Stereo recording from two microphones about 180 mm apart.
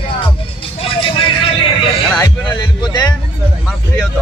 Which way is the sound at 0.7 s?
30° left (ahead or behind).